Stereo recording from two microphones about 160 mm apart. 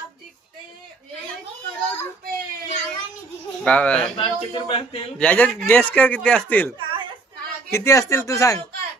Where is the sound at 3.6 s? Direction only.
10° left (ahead or behind).